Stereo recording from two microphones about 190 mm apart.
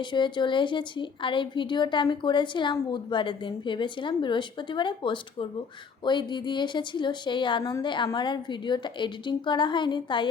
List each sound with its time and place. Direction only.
0.0 s a woman's voice: 25° left (ahead or behind)